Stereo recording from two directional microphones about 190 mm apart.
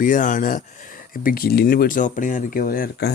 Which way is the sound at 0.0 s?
40° left (ahead or behind).